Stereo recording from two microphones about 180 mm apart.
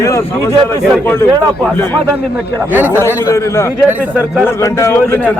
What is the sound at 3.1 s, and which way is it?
A man's voice, 15° left (ahead or behind).